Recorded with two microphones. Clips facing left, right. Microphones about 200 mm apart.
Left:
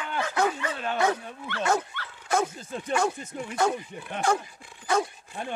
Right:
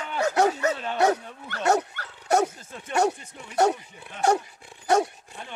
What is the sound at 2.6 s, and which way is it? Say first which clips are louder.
Speech: left 7 dB; 35° left (ahead or behind).